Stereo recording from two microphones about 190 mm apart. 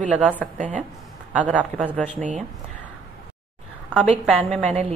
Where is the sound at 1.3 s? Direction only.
5° right (ahead or behind).